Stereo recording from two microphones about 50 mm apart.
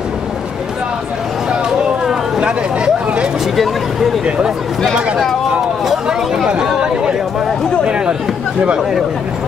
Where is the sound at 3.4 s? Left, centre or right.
Centre.